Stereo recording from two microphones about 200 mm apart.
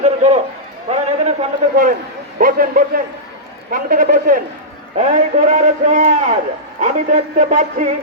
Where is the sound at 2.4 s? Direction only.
45° right (ahead or behind).